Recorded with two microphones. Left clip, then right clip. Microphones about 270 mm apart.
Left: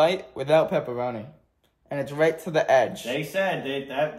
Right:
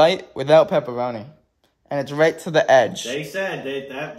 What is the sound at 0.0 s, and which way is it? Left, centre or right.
Speech, right.